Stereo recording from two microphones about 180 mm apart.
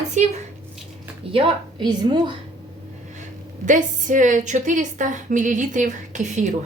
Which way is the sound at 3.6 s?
45° right (ahead or behind).